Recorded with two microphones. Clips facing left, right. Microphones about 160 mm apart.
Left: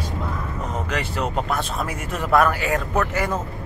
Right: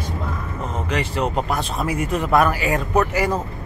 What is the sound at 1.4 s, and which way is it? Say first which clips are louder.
Speech: right 2 dB; 10° right (ahead or behind).